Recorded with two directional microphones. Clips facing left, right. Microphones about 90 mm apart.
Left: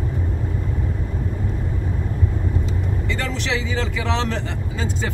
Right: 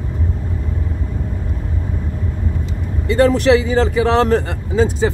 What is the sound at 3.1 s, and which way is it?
Speech, 45° right (ahead or behind).